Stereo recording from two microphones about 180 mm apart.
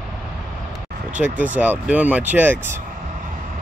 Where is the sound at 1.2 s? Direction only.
10° right (ahead or behind).